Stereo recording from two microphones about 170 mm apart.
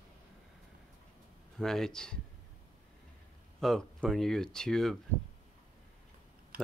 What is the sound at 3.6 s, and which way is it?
Speech, centre (ahead or behind).